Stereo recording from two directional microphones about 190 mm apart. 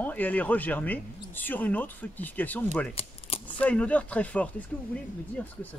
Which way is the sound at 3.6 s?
5° left (ahead or behind).